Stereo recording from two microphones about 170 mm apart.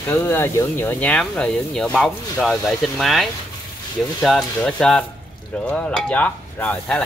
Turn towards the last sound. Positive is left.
turn(degrees=10)  # may be behind; listen again after turning